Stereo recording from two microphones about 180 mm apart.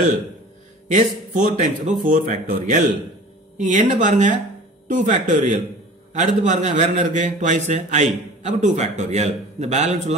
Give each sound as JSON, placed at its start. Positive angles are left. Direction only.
{"t": 0.8, "sound": "a man's voice", "side_deg": -45}